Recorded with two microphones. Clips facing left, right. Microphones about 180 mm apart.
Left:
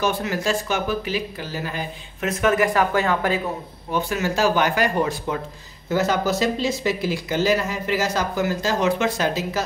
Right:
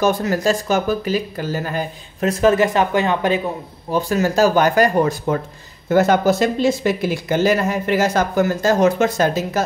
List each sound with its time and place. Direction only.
0.0 s speech: 40° right (ahead or behind); by 3.3 s 20° right (ahead or behind)
3.9 s speech: 40° right (ahead or behind)
5.9 s speech: 55° right (ahead or behind)